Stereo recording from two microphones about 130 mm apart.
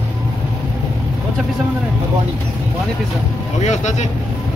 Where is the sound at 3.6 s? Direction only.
60° left (ahead or behind).